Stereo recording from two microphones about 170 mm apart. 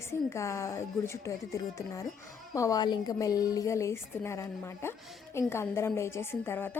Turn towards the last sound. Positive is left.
turn(degrees=10)  # may be behind; listen again after turning